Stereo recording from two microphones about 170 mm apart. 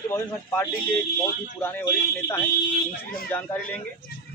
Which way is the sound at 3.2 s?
10° left (ahead or behind).